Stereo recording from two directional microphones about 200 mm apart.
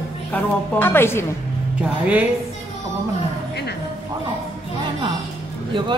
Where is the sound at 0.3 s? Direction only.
10° left (ahead or behind).